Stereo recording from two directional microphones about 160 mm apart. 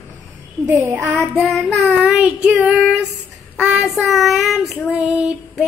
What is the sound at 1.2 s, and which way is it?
Child singing, centre (ahead or behind).